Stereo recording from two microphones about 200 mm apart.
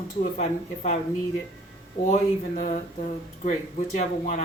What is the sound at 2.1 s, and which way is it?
Speech, 35° left (ahead or behind).